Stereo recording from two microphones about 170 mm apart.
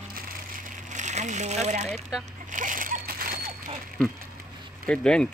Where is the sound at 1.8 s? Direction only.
5° left (ahead or behind).